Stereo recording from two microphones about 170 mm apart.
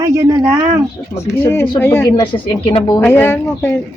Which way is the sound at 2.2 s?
30° left (ahead or behind).